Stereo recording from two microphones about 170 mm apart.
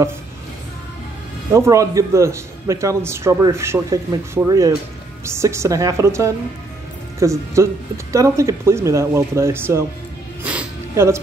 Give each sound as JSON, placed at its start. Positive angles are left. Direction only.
{"t": 1.5, "sound": "a man's voice", "side_deg": -20}
{"t": 10.4, "sound": "music", "side_deg": -10}